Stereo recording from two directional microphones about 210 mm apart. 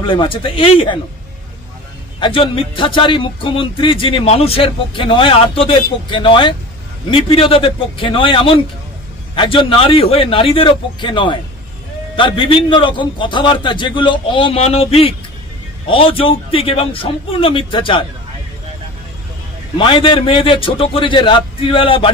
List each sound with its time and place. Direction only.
0.0 s speech: 25° left (ahead or behind)
2.1 s speech: 25° left (ahead or behind)
19.8 s speech: 25° left (ahead or behind)